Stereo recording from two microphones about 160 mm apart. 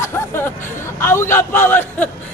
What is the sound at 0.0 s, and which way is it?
Music, 15° left (ahead or behind).